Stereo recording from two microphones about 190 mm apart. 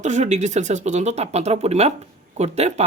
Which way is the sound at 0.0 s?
40° right (ahead or behind).